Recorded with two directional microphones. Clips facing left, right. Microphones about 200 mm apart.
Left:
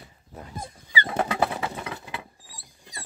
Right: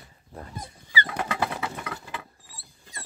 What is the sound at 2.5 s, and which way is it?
Rodents, 15° left (ahead or behind).